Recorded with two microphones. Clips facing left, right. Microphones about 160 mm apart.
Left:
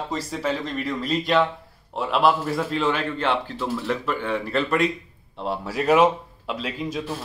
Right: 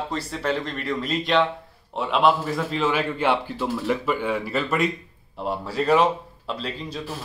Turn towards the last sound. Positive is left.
turn(degrees=10)  # may be behind; listen again after turning